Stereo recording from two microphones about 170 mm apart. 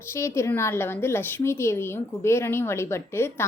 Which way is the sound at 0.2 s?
15° left (ahead or behind).